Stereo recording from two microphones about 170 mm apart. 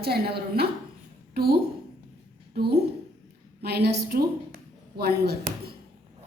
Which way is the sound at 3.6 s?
70° right (ahead or behind).